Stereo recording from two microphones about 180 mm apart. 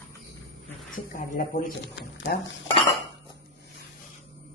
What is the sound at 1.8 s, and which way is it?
Speech, 80° left.